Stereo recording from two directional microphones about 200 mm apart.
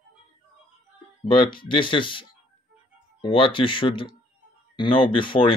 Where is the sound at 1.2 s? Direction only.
25° left (ahead or behind).